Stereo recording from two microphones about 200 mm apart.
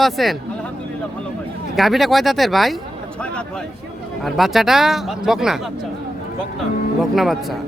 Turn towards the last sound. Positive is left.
turn(degrees=0)  # may be behind; listen again after turning